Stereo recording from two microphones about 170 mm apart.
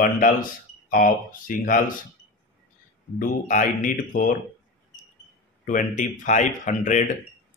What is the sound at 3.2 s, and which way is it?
Speech, 50° left (ahead or behind).